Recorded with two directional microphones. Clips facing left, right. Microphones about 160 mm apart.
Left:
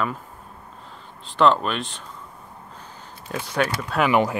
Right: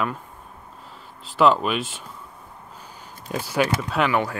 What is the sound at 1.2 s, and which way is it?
Speech, 5° right (ahead or behind).